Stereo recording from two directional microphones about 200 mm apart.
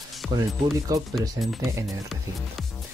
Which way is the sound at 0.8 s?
20° right (ahead or behind).